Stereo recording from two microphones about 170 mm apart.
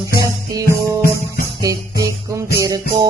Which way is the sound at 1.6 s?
20° right (ahead or behind).